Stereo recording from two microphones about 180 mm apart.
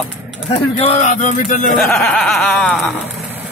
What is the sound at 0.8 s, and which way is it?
Speech, 40° left (ahead or behind).